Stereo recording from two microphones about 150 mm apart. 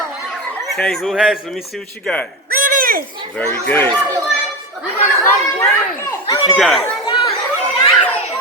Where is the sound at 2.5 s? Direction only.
75° right (ahead or behind).